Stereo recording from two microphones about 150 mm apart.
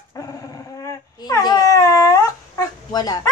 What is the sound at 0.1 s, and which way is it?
Dog, 25° left (ahead or behind).